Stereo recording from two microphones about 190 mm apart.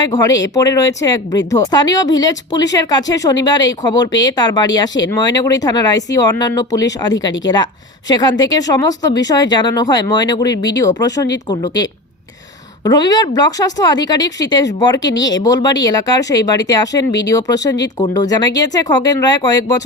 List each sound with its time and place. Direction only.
0.2 s speech: 15° left (ahead or behind)